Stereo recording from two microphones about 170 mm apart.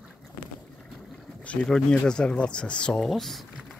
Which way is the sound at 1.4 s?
5° left (ahead or behind).